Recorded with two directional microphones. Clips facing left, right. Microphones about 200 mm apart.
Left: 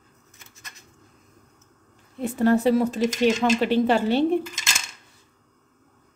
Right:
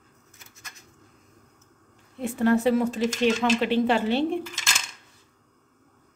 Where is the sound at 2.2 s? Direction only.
35° left (ahead or behind).